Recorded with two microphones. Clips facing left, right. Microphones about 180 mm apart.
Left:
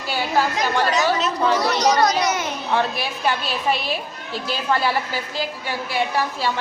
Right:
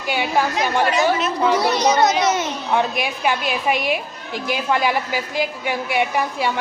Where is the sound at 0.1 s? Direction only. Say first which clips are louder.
Right 1 dB; 15° right (ahead or behind).